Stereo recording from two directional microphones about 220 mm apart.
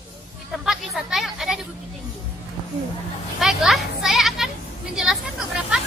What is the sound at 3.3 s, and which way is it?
A woman's voice, centre (ahead or behind).